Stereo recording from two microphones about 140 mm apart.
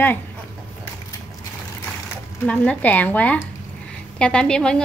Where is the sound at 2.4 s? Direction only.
10° left (ahead or behind).